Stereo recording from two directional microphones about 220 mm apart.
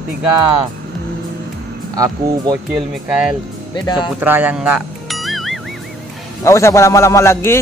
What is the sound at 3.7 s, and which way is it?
Speech, 20° left (ahead or behind).